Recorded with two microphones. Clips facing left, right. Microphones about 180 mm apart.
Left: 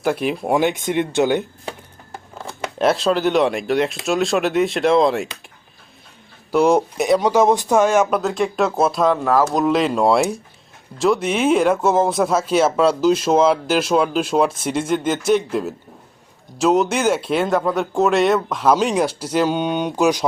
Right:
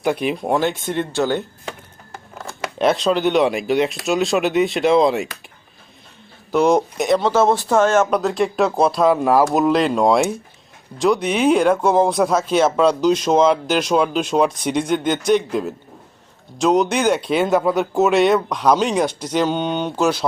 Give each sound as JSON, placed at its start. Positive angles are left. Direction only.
{"t": 0.0, "sound": "speech", "side_deg": 0}
{"t": 0.6, "sound": "speech", "side_deg": 15}
{"t": 2.1, "sound": "scissors", "side_deg": 15}
{"t": 2.7, "sound": "speech", "side_deg": 0}
{"t": 6.5, "sound": "speech", "side_deg": 10}
{"t": 8.2, "sound": "speech", "side_deg": 0}
{"t": 9.1, "sound": "speech", "side_deg": -15}